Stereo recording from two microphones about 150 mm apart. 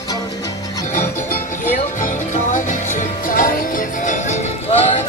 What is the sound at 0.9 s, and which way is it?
Music, 60° left (ahead or behind).